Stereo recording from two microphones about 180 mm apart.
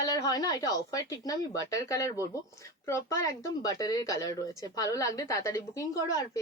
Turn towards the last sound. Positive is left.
turn(degrees=20)  # may be behind; listen again after turning